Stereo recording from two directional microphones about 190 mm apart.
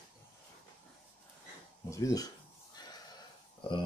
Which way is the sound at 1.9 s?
15° left (ahead or behind).